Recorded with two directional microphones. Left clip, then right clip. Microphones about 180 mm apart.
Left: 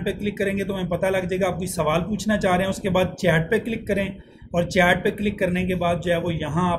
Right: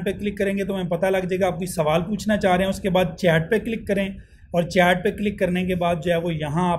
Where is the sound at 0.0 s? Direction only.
35° right (ahead or behind).